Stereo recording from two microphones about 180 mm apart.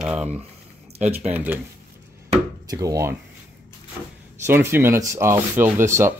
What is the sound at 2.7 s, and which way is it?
Speech, 20° right (ahead or behind).